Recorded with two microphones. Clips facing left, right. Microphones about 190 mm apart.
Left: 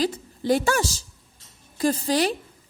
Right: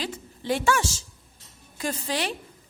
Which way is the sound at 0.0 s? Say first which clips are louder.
Left 8 dB; 40° left (ahead or behind).